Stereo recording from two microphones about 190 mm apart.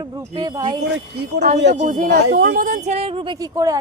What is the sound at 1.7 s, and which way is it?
Speech, 40° right (ahead or behind).